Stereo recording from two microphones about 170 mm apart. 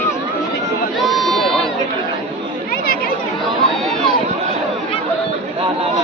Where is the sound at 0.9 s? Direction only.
Centre (ahead or behind).